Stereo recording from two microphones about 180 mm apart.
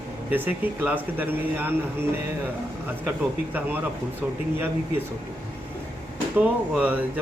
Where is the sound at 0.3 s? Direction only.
10° right (ahead or behind).